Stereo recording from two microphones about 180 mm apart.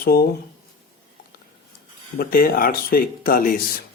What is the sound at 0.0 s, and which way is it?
Speech, 55° left (ahead or behind).